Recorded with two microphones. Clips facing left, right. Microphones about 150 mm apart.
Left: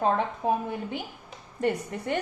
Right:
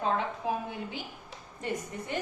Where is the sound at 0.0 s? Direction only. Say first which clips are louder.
Left 5 dB; 50° left (ahead or behind).